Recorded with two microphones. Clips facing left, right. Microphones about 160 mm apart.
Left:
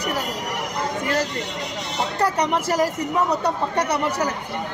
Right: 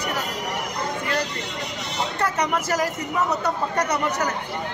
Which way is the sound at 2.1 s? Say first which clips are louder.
Left 3 dB; 35° left (ahead or behind).